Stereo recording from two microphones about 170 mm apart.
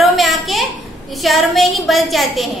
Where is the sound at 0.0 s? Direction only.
Centre (ahead or behind).